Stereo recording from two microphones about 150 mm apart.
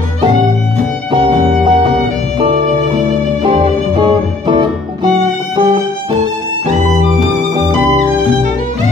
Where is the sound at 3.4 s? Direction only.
35° right (ahead or behind).